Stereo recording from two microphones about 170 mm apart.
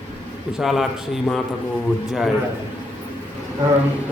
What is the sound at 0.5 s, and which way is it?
A man's voice, centre (ahead or behind).